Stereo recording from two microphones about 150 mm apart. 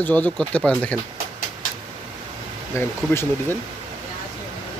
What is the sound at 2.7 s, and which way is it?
Speech, 15° left (ahead or behind).